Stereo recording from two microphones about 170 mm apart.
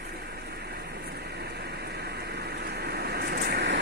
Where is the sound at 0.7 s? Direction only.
70° right (ahead or behind).